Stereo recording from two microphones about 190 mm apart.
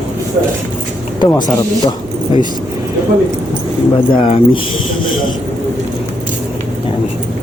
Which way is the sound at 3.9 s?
25° left (ahead or behind).